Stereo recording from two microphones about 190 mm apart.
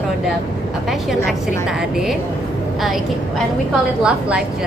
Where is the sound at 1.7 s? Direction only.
5° right (ahead or behind).